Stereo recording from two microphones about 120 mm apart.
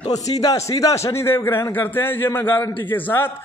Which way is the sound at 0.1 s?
30° left (ahead or behind).